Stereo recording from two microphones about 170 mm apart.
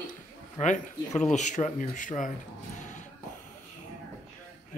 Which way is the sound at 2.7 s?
45° left (ahead or behind).